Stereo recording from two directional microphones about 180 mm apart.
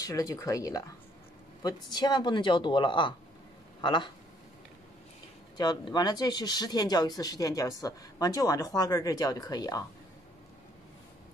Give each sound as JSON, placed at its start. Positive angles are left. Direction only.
{"t": 0.0, "sound": "speech", "side_deg": 20}
{"t": 5.6, "sound": "speech", "side_deg": 25}